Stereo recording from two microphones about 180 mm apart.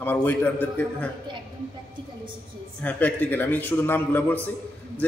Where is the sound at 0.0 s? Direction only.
10° left (ahead or behind).